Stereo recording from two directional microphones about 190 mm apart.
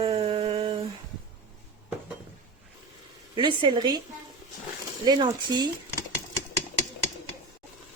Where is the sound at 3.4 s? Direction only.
25° right (ahead or behind).